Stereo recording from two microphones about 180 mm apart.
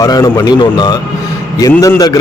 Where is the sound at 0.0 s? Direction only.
20° left (ahead or behind).